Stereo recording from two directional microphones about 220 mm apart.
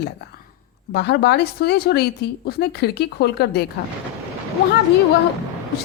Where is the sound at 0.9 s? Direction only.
50° left (ahead or behind).